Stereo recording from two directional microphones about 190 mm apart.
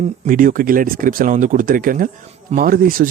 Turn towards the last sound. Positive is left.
turn(degrees=-50)  # may be behind; listen again after turning